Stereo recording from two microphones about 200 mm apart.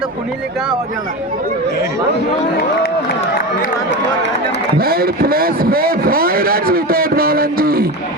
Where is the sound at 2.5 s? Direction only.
50° left (ahead or behind).